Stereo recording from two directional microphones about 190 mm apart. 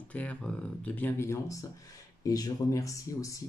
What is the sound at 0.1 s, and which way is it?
Speech, 5° left (ahead or behind).